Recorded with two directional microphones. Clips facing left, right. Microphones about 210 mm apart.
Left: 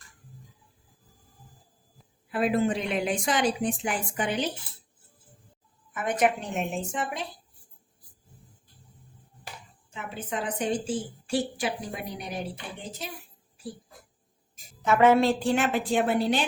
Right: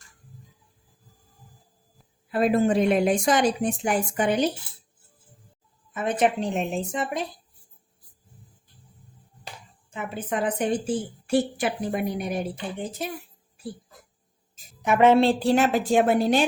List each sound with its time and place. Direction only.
2.3 s a woman's voice: 45° right (ahead or behind)
5.9 s a woman's voice: 25° right (ahead or behind)
9.9 s a woman's voice: 55° right (ahead or behind)
14.8 s a woman's voice: 20° right (ahead or behind); by 16.4 s 45° right (ahead or behind)